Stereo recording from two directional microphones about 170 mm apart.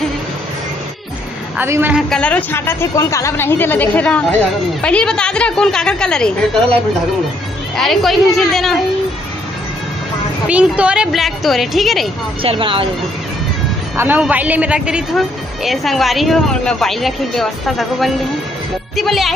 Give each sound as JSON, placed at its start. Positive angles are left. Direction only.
{"t": 1.6, "sound": "a woman's voice", "side_deg": -10}
{"t": 2.0, "sound": "a woman's voice", "side_deg": 5}
{"t": 10.5, "sound": "speech", "side_deg": -5}
{"t": 12.4, "sound": "speech", "side_deg": -30}
{"t": 13.9, "sound": "speech", "side_deg": -10}